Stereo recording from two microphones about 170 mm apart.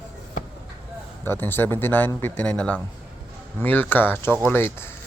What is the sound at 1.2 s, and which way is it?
Speech, 10° left (ahead or behind).